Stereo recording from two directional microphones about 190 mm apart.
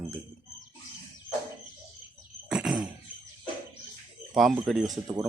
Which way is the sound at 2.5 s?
5° right (ahead or behind).